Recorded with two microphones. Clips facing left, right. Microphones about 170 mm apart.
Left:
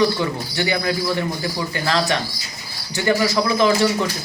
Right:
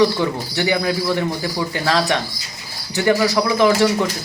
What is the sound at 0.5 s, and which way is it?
Speech, 15° right (ahead or behind).